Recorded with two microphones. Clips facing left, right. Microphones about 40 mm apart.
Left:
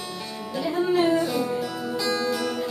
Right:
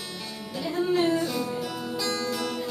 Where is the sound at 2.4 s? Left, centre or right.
Centre.